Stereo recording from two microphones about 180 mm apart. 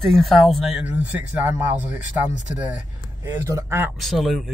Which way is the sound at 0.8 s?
10° right (ahead or behind).